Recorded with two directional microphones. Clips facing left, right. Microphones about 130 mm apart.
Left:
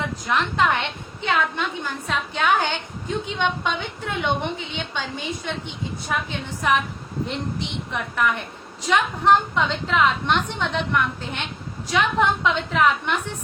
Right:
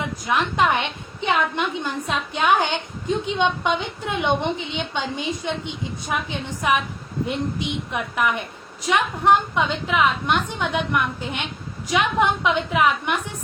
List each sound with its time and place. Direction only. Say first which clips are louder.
0.3 s a woman's voice: right 1 dB; 15° right (ahead or behind)